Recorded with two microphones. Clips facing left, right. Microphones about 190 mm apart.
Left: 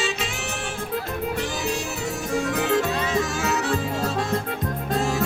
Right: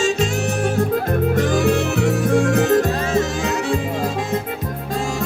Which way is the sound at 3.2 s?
15° right (ahead or behind).